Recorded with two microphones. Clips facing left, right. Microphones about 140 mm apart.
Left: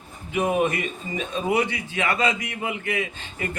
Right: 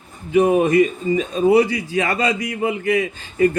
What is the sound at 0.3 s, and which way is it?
A man's voice, 35° right (ahead or behind).